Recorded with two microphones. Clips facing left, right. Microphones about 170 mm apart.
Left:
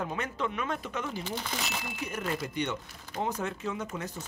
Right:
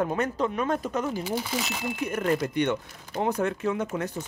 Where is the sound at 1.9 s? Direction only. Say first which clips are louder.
Right 9 dB; 55° right (ahead or behind).